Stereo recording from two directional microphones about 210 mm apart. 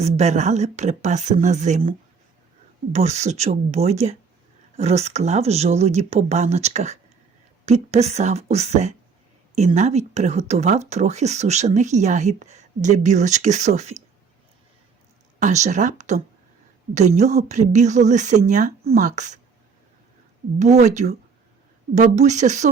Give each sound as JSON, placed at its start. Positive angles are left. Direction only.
{"t": 0.0, "sound": "speech", "side_deg": -30}
{"t": 15.4, "sound": "speech", "side_deg": -35}
{"t": 20.6, "sound": "speech", "side_deg": -35}